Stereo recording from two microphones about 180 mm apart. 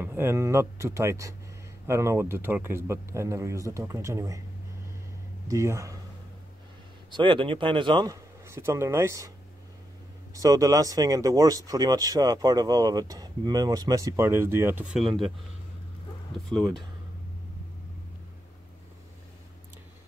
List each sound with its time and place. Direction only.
0.0 s speech: 10° right (ahead or behind)
5.5 s speech: 15° right (ahead or behind)
7.1 s speech: 25° right (ahead or behind)
10.3 s speech: 20° right (ahead or behind); by 15.3 s centre (ahead or behind)
16.4 s speech: centre (ahead or behind)